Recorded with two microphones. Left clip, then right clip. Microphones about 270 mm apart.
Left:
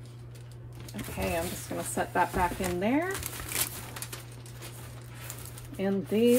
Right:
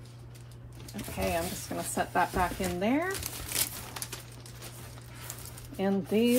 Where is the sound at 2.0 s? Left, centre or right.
Centre.